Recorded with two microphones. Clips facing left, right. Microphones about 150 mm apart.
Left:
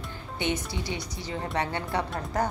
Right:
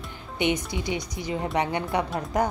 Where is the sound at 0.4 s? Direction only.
15° right (ahead or behind).